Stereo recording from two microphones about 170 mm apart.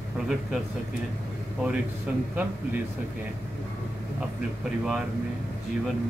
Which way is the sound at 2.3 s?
10° right (ahead or behind).